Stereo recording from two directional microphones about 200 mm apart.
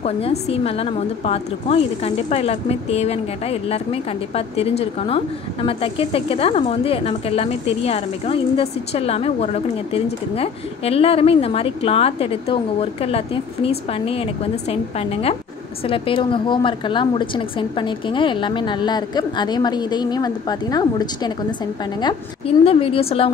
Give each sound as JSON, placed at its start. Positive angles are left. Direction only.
{"t": 0.0, "sound": "a woman's voice", "side_deg": 30}
{"t": 22.7, "sound": "a woman's voice", "side_deg": 25}